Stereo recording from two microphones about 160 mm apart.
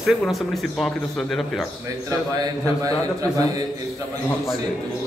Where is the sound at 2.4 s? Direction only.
20° right (ahead or behind).